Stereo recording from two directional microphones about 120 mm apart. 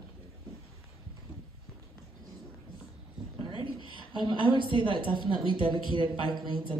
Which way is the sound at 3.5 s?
40° left (ahead or behind).